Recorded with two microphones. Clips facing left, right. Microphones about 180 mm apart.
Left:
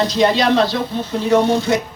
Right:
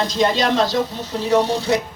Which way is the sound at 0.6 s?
40° right (ahead or behind).